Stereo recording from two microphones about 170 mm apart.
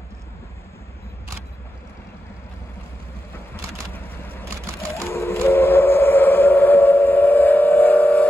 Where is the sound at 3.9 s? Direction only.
10° left (ahead or behind).